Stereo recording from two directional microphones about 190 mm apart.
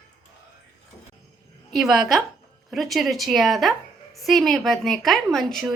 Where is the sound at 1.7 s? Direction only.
Centre (ahead or behind).